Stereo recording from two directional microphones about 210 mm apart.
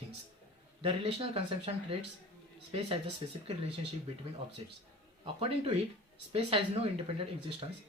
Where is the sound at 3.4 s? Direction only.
30° right (ahead or behind).